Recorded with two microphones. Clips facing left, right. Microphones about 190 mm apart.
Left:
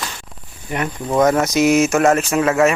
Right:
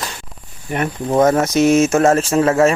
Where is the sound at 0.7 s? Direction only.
25° right (ahead or behind).